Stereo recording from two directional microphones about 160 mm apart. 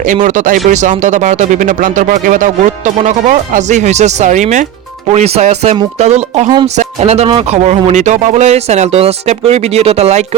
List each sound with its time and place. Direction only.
0.0 s speech: 55° right (ahead or behind)